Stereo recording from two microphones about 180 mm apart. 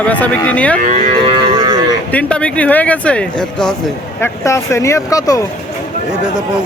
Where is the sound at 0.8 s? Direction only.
40° right (ahead or behind).